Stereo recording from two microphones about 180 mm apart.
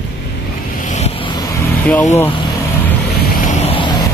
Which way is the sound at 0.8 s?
40° left (ahead or behind).